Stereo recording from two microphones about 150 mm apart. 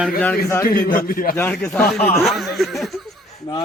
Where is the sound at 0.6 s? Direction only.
70° left (ahead or behind).